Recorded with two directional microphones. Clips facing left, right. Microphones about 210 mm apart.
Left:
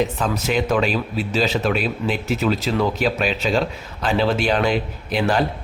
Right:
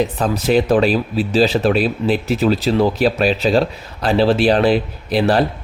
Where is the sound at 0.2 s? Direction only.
35° right (ahead or behind).